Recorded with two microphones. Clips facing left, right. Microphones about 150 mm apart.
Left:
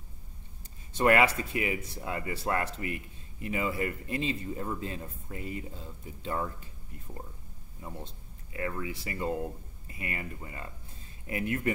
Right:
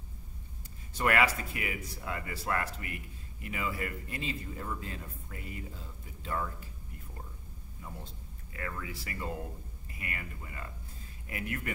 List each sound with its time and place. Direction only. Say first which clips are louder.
0.9 s speech: left 5 dB; 25° left (ahead or behind)
7.8 s speech: left 4 dB; 30° left (ahead or behind)